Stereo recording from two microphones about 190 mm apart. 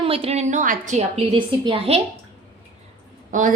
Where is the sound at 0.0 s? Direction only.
30° right (ahead or behind).